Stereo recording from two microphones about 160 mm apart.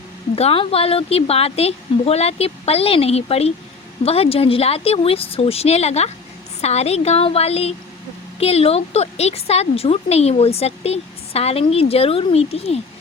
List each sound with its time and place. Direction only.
0.3 s speech: 35° left (ahead or behind)